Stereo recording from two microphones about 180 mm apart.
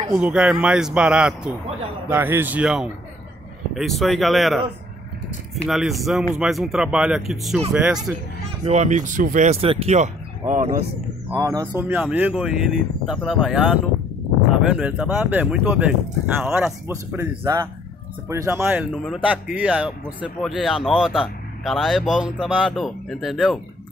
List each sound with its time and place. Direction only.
0.1 s speech: 5° right (ahead or behind)
8.6 s speech: 40° right (ahead or behind)
11.3 s speech: 20° right (ahead or behind); by 23.6 s centre (ahead or behind)